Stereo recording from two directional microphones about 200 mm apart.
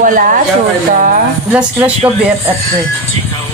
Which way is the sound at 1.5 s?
5° right (ahead or behind).